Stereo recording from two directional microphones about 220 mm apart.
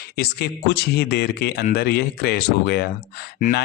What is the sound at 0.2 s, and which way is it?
Speech, 45° left (ahead or behind).